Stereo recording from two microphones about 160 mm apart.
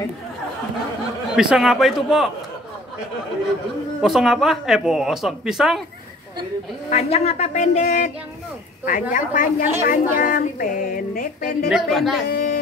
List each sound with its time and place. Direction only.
1.3 s speech: 5° right (ahead or behind)
4.0 s speech: centre (ahead or behind)
6.9 s a woman's voice: 40° left (ahead or behind)
9.1 s music: 55° left (ahead or behind)
11.7 s speech: centre (ahead or behind)
12.3 s speech: 80° left